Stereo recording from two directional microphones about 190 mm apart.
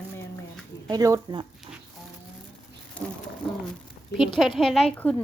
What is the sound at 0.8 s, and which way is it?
Speech, 20° right (ahead or behind).